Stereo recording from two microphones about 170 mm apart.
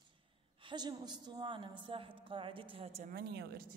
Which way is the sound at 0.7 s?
25° right (ahead or behind).